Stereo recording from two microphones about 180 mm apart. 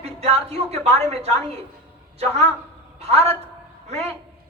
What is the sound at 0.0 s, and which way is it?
A man's voice, 35° right (ahead or behind).